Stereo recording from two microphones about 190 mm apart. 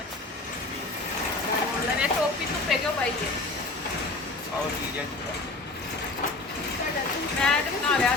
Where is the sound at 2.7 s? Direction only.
Centre (ahead or behind).